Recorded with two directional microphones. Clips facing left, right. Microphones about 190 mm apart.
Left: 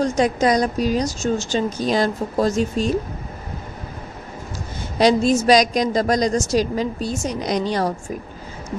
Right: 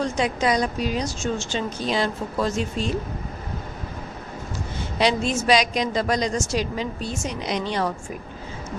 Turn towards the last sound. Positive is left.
turn(degrees=40)  # may be behind; listen again after turning